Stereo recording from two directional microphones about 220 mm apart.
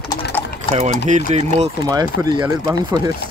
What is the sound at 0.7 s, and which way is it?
Speech, 30° right (ahead or behind).